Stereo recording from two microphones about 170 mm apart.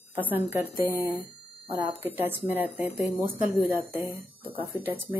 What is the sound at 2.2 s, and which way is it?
Speech, 10° right (ahead or behind).